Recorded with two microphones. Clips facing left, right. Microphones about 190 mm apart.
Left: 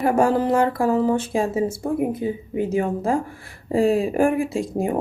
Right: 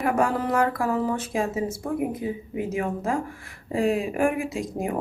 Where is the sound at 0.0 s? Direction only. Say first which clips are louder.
Left 5 dB; 30° left (ahead or behind).